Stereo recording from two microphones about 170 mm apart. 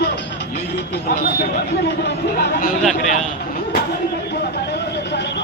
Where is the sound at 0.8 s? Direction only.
80° left.